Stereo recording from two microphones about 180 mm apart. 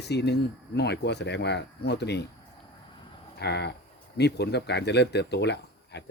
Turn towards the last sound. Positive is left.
turn(degrees=70)  # may be behind; listen again after turning